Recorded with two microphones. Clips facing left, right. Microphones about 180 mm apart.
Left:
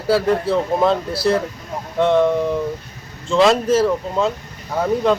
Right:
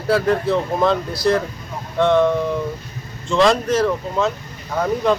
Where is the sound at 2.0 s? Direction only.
5° left (ahead or behind).